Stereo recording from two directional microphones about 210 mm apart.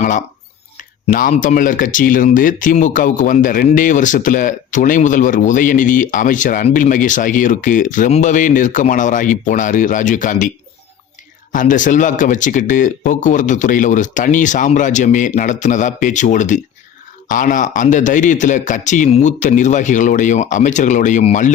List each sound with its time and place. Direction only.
0.8 s speech: 40° left (ahead or behind)
11.5 s speech: 40° left (ahead or behind)